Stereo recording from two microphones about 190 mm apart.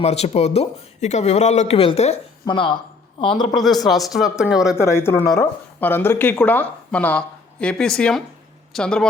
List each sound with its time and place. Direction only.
0.0 s speech: 35° left (ahead or behind)
3.5 s speech: centre (ahead or behind)
4.8 s speech: 15° left (ahead or behind)